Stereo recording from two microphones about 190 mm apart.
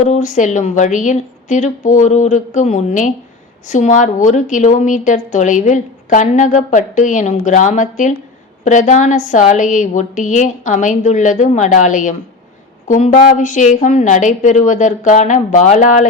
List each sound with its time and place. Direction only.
0.0 s a woman's voice: 40° left (ahead or behind)